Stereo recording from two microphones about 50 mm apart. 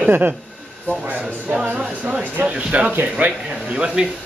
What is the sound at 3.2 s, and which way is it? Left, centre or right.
Speech, right.